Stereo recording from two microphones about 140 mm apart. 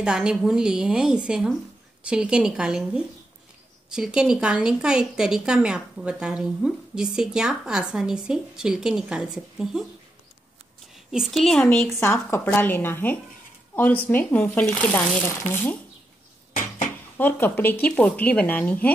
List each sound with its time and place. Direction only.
0.0 s speech: 5° right (ahead or behind)
11.1 s speech: centre (ahead or behind)
11.9 s speech: 15° left (ahead or behind)
16.5 s a sound: 65° left (ahead or behind)
17.2 s speech: 15° left (ahead or behind)